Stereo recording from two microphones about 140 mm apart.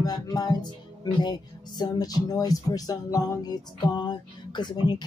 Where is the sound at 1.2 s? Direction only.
30° left (ahead or behind).